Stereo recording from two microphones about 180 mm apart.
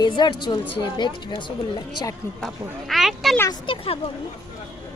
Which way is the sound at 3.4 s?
25° left (ahead or behind).